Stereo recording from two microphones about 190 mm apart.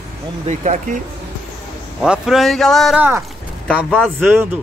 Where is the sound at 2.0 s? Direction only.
5° right (ahead or behind).